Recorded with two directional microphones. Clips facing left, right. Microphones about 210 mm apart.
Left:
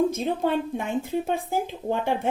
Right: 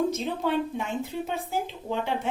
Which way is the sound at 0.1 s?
50° left (ahead or behind).